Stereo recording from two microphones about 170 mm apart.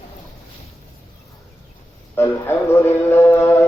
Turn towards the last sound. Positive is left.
turn(degrees=15)  # may be behind; listen again after turning